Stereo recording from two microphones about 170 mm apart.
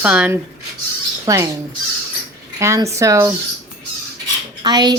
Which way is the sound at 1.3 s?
20° right (ahead or behind).